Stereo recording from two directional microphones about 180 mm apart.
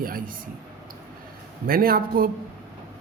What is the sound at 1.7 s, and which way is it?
Speech, 55° right (ahead or behind).